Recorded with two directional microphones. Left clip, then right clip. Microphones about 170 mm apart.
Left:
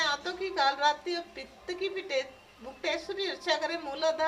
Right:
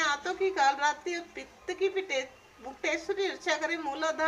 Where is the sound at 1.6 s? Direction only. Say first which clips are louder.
Right 4 dB; 15° right (ahead or behind).